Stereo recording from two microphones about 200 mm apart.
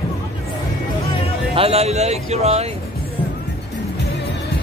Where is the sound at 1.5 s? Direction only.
30° right (ahead or behind).